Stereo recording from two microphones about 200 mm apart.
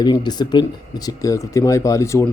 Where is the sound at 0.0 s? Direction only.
20° left (ahead or behind).